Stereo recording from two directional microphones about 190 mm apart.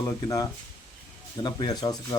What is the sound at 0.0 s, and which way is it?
Speech, 15° left (ahead or behind).